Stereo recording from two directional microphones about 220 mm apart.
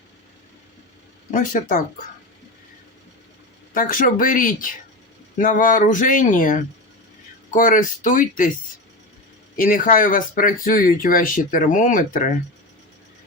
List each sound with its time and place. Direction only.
1.3 s speech: 35° left (ahead or behind)
3.8 s speech: 40° left (ahead or behind)
9.6 s speech: 40° left (ahead or behind)